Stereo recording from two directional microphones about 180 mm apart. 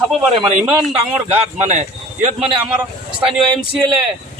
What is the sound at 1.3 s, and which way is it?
Speech, 40° right (ahead or behind).